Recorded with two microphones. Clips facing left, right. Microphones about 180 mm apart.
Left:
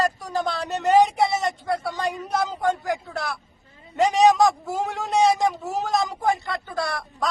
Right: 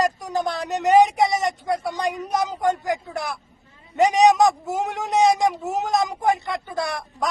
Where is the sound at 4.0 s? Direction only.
20° right (ahead or behind).